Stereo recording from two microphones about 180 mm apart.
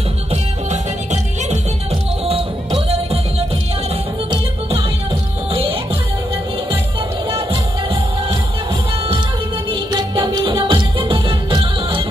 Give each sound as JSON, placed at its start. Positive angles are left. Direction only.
{"t": 0.3, "sound": "music", "side_deg": -40}
{"t": 9.7, "sound": "music", "side_deg": -25}